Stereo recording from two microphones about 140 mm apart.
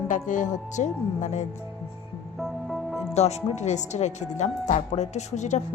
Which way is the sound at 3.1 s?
50° left (ahead or behind).